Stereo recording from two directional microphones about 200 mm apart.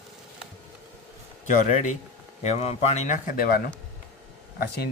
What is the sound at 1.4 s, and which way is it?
Speech, 40° left (ahead or behind).